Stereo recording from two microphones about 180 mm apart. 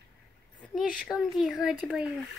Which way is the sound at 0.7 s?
Centre (ahead or behind).